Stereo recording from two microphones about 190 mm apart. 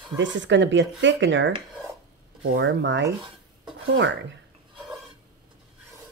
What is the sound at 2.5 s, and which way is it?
Speech, 75° right (ahead or behind).